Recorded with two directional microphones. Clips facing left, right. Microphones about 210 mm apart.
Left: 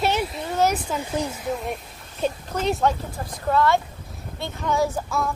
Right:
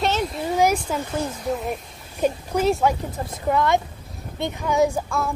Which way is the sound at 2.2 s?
10° right (ahead or behind).